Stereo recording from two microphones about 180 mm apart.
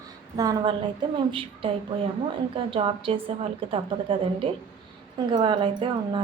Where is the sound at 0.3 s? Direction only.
20° right (ahead or behind).